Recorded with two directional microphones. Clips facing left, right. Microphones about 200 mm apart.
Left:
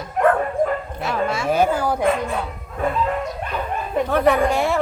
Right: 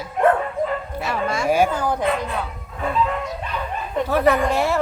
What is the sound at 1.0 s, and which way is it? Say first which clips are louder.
Speech: left 1 dB; centre (ahead or behind).